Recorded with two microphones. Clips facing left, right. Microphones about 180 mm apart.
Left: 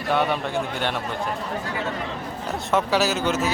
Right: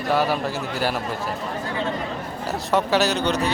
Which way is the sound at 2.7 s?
Centre (ahead or behind).